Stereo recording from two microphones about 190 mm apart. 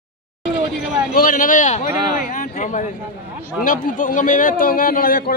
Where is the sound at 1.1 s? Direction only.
50° left (ahead or behind).